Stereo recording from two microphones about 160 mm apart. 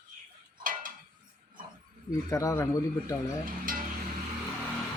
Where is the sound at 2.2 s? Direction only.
20° left (ahead or behind).